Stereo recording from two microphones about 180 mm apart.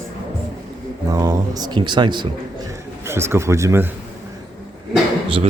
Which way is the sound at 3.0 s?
15° right (ahead or behind).